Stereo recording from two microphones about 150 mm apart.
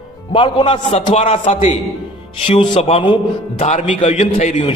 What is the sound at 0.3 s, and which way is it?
A man's voice, 35° left (ahead or behind).